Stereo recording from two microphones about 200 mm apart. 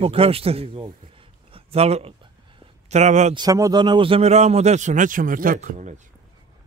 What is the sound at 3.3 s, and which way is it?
A man's voice, 20° right (ahead or behind).